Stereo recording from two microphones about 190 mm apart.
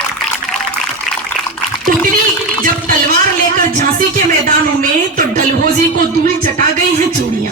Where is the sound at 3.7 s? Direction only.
45° right (ahead or behind).